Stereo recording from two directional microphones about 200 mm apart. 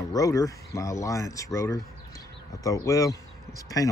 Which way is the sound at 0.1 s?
15° left (ahead or behind).